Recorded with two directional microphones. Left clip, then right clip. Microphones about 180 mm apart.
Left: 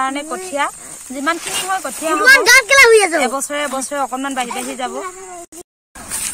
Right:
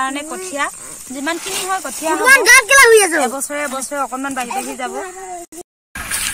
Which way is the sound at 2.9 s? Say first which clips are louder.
Even; 55° right (ahead or behind).